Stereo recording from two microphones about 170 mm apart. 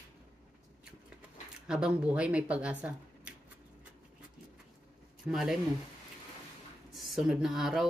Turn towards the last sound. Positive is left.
turn(degrees=0)  # may be behind; listen again after turning